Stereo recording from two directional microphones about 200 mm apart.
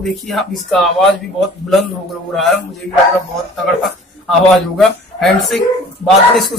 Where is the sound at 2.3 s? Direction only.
Centre (ahead or behind).